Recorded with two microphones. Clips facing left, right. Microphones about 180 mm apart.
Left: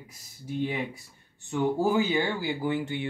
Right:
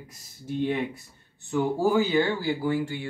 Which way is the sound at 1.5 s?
20° left (ahead or behind).